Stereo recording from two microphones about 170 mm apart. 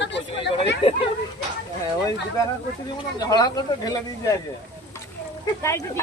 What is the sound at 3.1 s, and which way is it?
Speech, 25° left (ahead or behind).